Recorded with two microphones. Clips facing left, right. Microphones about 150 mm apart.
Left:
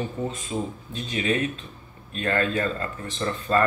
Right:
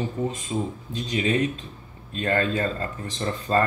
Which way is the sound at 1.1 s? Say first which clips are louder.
Right 2 dB; 25° right (ahead or behind).